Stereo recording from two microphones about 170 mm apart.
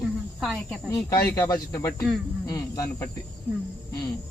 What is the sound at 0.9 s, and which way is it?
Speech, 20° left (ahead or behind).